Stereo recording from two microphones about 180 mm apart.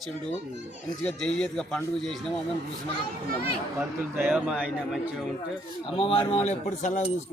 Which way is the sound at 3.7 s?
5° right (ahead or behind).